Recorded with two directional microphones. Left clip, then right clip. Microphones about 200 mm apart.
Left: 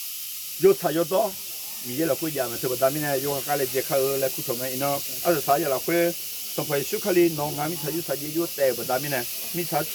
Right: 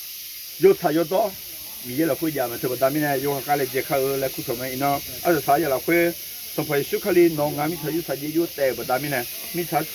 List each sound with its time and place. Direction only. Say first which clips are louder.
0.6 s speech: right 2 dB; centre (ahead or behind)